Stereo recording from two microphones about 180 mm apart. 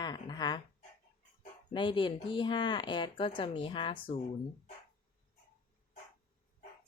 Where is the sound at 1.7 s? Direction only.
25° left (ahead or behind).